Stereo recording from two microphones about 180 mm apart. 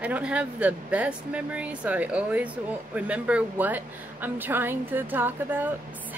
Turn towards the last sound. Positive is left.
turn(degrees=-10)  # may be behind; listen again after turning